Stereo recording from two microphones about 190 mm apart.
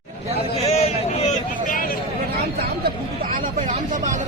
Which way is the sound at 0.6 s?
35° left (ahead or behind).